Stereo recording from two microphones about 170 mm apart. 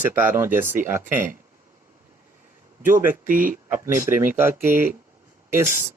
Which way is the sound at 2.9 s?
10° right (ahead or behind).